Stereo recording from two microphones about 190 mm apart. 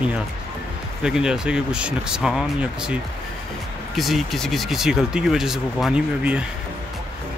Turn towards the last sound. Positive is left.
turn(degrees=-5)  # may be behind; listen again after turning